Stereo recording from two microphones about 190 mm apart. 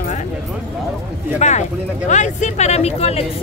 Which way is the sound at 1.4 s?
40° left (ahead or behind).